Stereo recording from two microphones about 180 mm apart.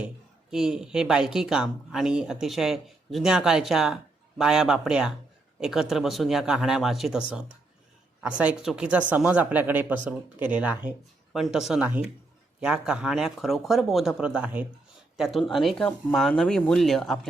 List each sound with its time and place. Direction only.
0.5 s speech: 5° right (ahead or behind)